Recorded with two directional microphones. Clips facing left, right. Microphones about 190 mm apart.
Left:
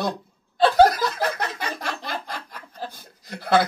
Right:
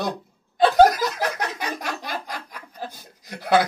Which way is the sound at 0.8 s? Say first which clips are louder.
Right 1 dB; 15° right (ahead or behind).